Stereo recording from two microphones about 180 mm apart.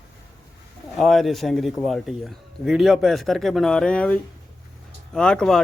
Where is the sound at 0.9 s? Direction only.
Centre (ahead or behind).